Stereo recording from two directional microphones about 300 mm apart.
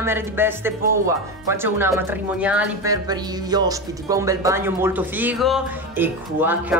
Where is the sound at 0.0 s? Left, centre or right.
Centre.